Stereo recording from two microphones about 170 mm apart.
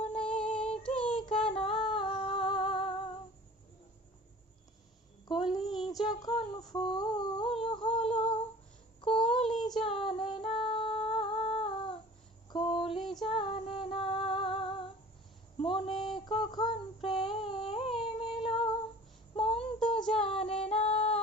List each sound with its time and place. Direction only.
0.2 s female singing: 5° left (ahead or behind)
0.8 s child singing: 5° left (ahead or behind)
1.1 s child singing: 30° left (ahead or behind)
1.5 s music: 35° left (ahead or behind)
5.5 s child singing: centre (ahead or behind)
5.9 s a sound: 20° left (ahead or behind)
9.0 s child singing: 30° left (ahead or behind)
9.6 s child singing: centre (ahead or behind)
9.8 s female singing: 30° left (ahead or behind)
12.5 s music: 30° left (ahead or behind)
15.5 s a sound: 30° left (ahead or behind)
18.0 s female singing: 30° left (ahead or behind)
19.4 s music: 35° left (ahead or behind)
20.4 s female singing: 35° left (ahead or behind)